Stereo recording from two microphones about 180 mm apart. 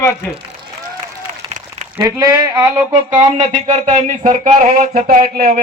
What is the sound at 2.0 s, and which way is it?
Speech, 20° right (ahead or behind).